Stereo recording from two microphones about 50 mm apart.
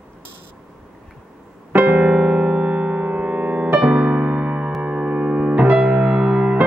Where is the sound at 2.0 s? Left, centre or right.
Right.